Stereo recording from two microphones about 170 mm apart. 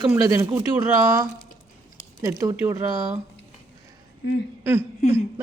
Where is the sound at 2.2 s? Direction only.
20° right (ahead or behind).